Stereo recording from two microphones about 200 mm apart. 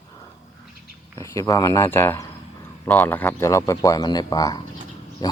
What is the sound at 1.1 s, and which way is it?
Speech, 15° left (ahead or behind).